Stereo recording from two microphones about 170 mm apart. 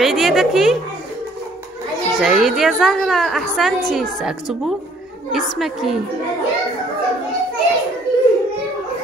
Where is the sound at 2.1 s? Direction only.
Centre (ahead or behind).